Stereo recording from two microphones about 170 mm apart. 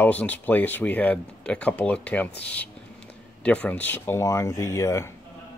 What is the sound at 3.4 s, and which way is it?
Speech, 10° left (ahead or behind).